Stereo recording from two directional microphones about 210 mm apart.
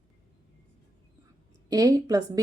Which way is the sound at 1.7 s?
15° right (ahead or behind).